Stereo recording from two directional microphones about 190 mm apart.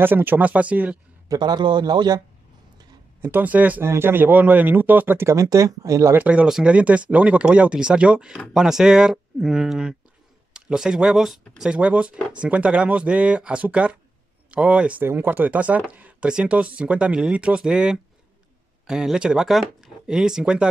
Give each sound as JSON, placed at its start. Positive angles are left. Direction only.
{"t": 0.0, "sound": "speech", "side_deg": -10}
{"t": 1.3, "sound": "a man's voice", "side_deg": -20}
{"t": 3.2, "sound": "speech", "side_deg": -10}